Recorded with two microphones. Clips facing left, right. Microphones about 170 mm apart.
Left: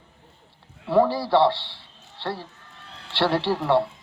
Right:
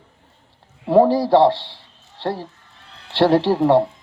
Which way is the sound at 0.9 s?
45° right (ahead or behind).